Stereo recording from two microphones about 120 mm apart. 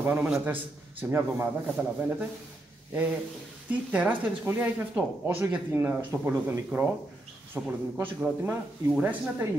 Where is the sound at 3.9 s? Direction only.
10° right (ahead or behind).